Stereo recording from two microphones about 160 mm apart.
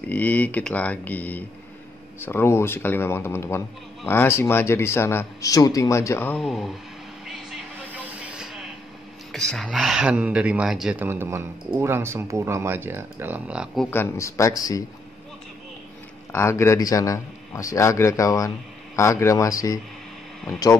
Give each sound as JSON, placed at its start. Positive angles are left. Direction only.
{"t": 0.1, "sound": "a man's voice", "side_deg": 10}
{"t": 6.4, "sound": "speech", "side_deg": 0}
{"t": 7.5, "sound": "vehicle", "side_deg": -10}
{"t": 9.3, "sound": "speech", "side_deg": 0}
{"t": 13.8, "sound": "a man's voice", "side_deg": 15}
{"t": 16.3, "sound": "a man's voice", "side_deg": 15}